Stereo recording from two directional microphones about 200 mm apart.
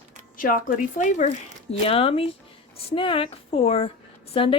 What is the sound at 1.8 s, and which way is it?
A woman's voice, 30° left (ahead or behind).